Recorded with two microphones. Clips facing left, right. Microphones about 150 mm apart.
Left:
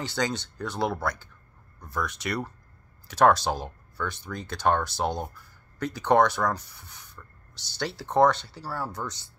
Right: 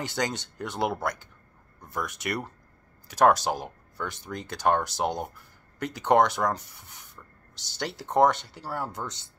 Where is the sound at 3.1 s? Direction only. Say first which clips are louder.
Even; 15° right (ahead or behind).